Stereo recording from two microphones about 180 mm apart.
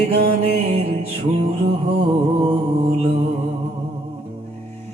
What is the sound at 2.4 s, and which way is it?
Mantra, 30° right (ahead or behind).